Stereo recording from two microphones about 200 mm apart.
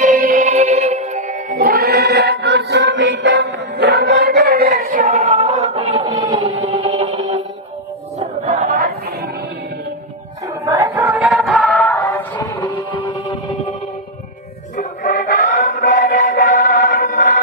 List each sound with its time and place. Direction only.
0.0 s music: 45° right (ahead or behind)
8.2 s choir: 35° right (ahead or behind)
10.6 s choir: 15° right (ahead or behind)
11.9 s music: 10° left (ahead or behind)
14.8 s chant: 40° left (ahead or behind)
15.7 s chant: 50° left (ahead or behind)